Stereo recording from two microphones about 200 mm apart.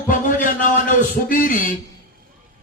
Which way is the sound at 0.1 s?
40° left (ahead or behind).